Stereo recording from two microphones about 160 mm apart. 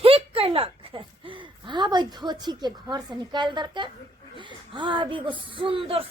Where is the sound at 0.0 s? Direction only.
35° right (ahead or behind).